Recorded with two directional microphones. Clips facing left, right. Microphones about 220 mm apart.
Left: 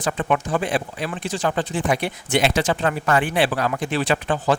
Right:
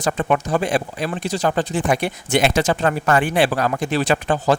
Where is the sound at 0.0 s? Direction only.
40° right (ahead or behind).